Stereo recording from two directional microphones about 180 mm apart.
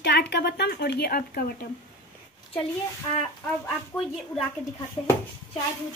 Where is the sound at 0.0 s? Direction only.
65° left (ahead or behind).